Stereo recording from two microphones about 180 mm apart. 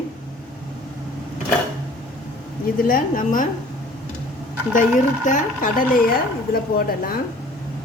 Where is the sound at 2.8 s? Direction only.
50° left (ahead or behind).